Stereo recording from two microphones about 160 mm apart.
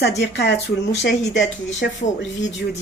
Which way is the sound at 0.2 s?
90° left.